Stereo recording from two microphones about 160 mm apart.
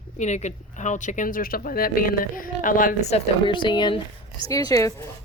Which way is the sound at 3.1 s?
30° left (ahead or behind).